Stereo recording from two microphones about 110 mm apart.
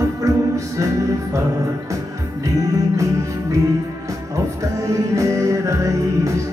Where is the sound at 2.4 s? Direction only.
30° right (ahead or behind).